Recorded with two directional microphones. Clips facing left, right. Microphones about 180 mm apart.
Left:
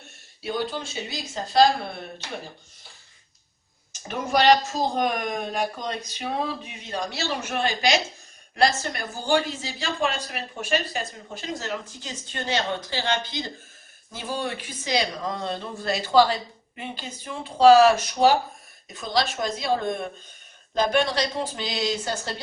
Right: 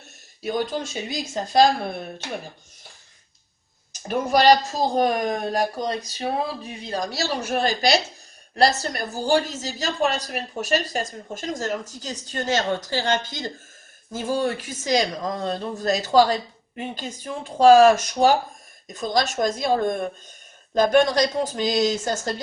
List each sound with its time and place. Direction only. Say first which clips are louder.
0.4 s speech: right 3 dB; 45° right (ahead or behind)
4.4 s speech: right 2 dB; 35° right (ahead or behind)